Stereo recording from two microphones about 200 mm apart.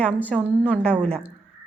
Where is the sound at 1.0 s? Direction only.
30° right (ahead or behind).